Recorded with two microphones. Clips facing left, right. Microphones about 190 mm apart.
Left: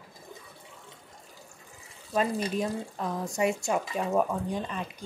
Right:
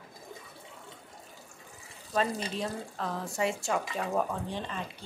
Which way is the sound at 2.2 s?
10° left (ahead or behind).